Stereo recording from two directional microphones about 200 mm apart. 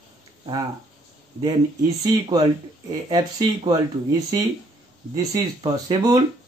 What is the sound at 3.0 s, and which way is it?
Speech, 20° right (ahead or behind).